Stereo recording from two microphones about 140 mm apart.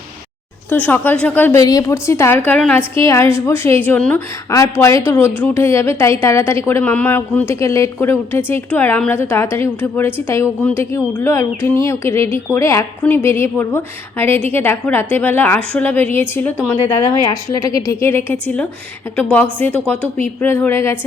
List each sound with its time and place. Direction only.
0.7 s a woman's voice: 10° left (ahead or behind)
4.4 s a woman's voice: 25° left (ahead or behind)
17.5 s a woman's voice: 25° left (ahead or behind)